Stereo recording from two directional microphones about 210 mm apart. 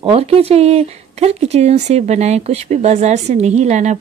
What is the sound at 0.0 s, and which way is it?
Speech, 25° right (ahead or behind).